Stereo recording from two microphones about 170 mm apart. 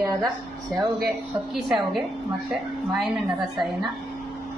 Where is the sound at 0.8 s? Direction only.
Centre (ahead or behind).